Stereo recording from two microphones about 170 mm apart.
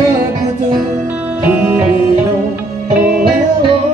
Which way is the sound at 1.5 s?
10° right (ahead or behind).